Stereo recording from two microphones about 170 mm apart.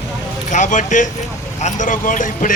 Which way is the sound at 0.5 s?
45° left (ahead or behind).